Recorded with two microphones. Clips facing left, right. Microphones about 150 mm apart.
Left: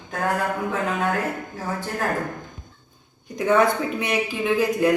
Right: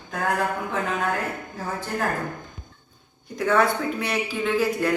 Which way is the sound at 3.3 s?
20° left (ahead or behind).